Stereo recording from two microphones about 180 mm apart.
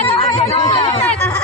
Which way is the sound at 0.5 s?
25° left (ahead or behind).